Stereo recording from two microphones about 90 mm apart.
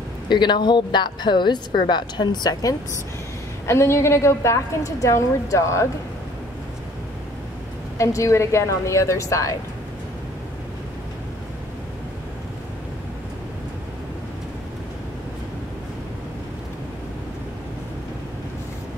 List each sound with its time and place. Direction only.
0.3 s speech: 55° left (ahead or behind)
3.6 s a woman's voice: 30° left (ahead or behind)
8.0 s a woman's voice: 35° left (ahead or behind)